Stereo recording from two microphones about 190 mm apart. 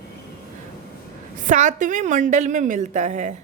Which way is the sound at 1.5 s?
40° right (ahead or behind).